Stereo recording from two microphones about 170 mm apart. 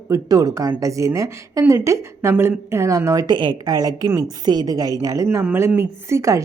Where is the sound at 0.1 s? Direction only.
20° right (ahead or behind).